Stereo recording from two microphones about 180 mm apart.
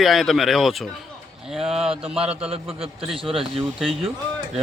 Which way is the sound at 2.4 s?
35° right (ahead or behind).